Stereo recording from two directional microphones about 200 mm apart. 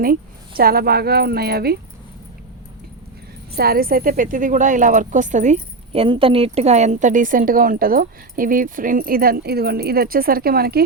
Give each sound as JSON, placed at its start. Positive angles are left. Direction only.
{"t": 0.0, "sound": "speech", "side_deg": -45}
{"t": 3.6, "sound": "speech", "side_deg": -50}